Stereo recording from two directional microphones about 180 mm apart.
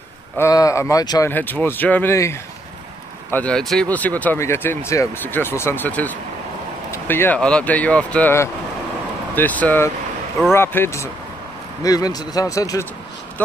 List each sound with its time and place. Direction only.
0.4 s speech: 20° left (ahead or behind)